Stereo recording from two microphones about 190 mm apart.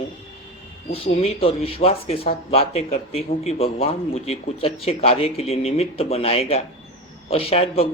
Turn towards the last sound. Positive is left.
turn(degrees=30)  # may be behind; listen again after turning